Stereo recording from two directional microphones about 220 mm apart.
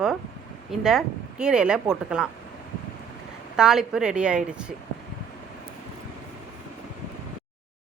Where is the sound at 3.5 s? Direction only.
Centre (ahead or behind).